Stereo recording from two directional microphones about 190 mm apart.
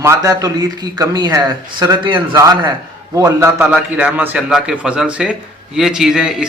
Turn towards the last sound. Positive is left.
turn(degrees=-5)  # may be behind; listen again after turning